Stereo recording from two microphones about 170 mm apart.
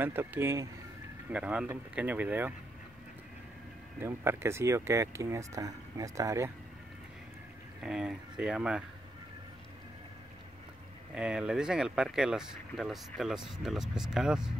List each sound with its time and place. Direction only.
0.0 s speech: 10° right (ahead or behind)
4.0 s speech: 15° right (ahead or behind)
7.8 s speech: 5° right (ahead or behind)
11.1 s speech: 5° right (ahead or behind)